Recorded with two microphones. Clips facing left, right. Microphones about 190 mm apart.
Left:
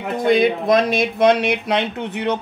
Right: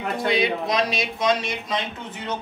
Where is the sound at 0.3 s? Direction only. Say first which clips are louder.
Left 9 dB; 50° left (ahead or behind).